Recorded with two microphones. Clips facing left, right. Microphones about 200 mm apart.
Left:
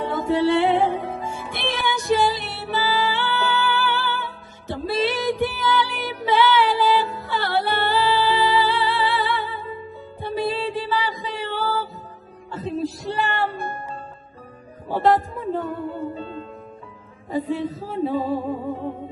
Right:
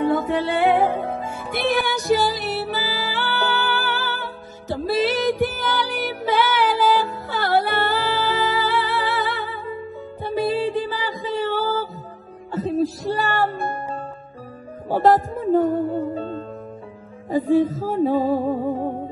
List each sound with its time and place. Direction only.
0.9 s music: 50° right (ahead or behind)